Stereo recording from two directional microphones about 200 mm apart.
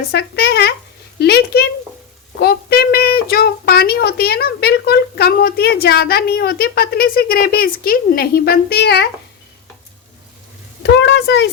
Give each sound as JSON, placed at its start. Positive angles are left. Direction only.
{"t": 0.1, "sound": "speech", "side_deg": 55}
{"t": 11.0, "sound": "speech", "side_deg": 60}